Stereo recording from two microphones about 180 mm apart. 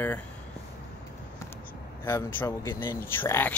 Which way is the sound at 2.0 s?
10° left (ahead or behind).